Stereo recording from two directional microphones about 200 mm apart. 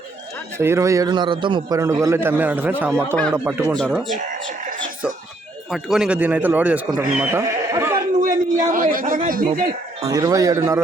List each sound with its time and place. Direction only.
0.6 s a man's voice: 15° right (ahead or behind)
3.9 s speech: centre (ahead or behind)
5.7 s a man's voice: 5° right (ahead or behind)
8.2 s a man's voice: 40° right (ahead or behind)
10.0 s a man's voice: 20° right (ahead or behind)